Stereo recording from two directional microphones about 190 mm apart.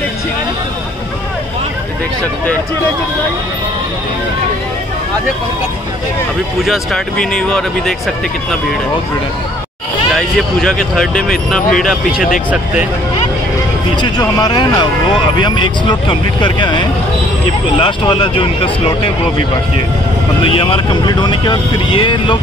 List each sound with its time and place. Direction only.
6.6 s speech: centre (ahead or behind)
10.1 s speech: centre (ahead or behind)
14.1 s speech: 20° left (ahead or behind)
20.4 s speech: 30° left (ahead or behind)